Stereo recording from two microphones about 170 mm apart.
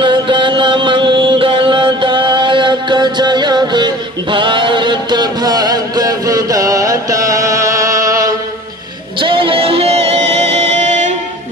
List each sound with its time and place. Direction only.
0.0 s music: 30° right (ahead or behind)
9.2 s music: 30° right (ahead or behind)